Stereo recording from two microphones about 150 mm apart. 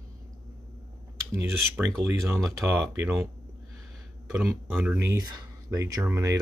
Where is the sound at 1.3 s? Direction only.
15° right (ahead or behind).